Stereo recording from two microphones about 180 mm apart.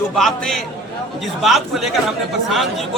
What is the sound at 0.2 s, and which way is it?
A man's voice, centre (ahead or behind).